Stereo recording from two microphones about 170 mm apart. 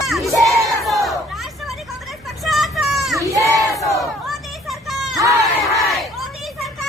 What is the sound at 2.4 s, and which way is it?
Vehicle, centre (ahead or behind).